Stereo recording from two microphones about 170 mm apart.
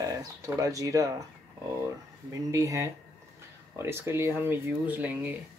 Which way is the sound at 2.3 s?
20° right (ahead or behind).